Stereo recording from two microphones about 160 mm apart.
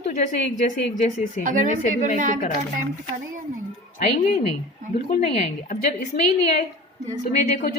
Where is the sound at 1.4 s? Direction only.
55° right (ahead or behind).